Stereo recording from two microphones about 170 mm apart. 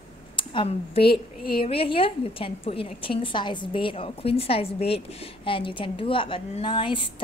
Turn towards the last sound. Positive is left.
turn(degrees=30)  # may be behind; listen again after turning